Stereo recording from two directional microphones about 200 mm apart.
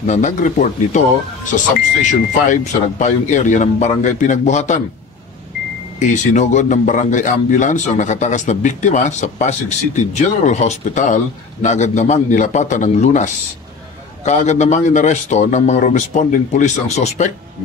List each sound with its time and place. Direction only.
0.0 s speech: 40° left (ahead or behind)
5.9 s speech: 40° left (ahead or behind)